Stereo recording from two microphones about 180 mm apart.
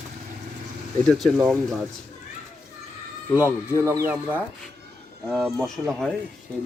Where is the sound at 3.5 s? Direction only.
15° right (ahead or behind).